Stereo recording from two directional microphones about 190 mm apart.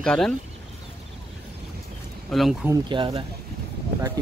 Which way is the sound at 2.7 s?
25° right (ahead or behind).